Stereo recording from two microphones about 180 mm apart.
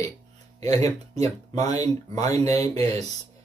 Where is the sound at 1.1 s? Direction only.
35° right (ahead or behind).